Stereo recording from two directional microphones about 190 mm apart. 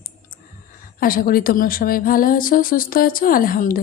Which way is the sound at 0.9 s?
50° left (ahead or behind).